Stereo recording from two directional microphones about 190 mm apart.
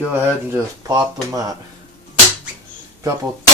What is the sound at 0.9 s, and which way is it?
Speech, 20° right (ahead or behind).